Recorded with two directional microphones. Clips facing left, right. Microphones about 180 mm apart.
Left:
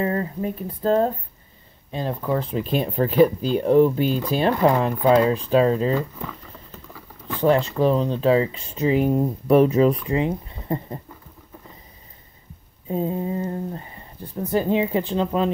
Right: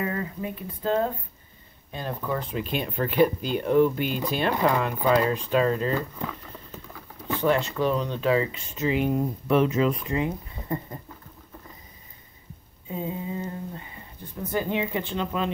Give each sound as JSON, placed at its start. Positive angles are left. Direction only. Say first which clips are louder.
{"t": 0.0, "sound": "speech", "louder": "left 6 dB", "side_deg": 35}
{"t": 1.9, "sound": "speech", "louder": "left 5 dB", "side_deg": 30}
{"t": 5.9, "sound": "boiling", "louder": "left 4 dB", "side_deg": 0}
{"t": 7.3, "sound": "speech", "louder": "left 5 dB", "side_deg": 35}
{"t": 10.0, "sound": "speech", "louder": "left 5 dB", "side_deg": 25}
{"t": 12.8, "sound": "speech", "louder": "left 7 dB", "side_deg": 40}